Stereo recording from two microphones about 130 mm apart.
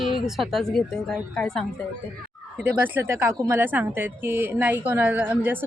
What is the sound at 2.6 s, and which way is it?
A woman's voice, 15° right (ahead or behind).